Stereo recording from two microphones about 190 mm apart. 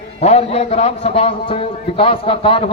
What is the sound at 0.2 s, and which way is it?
A man's voice, 35° left (ahead or behind).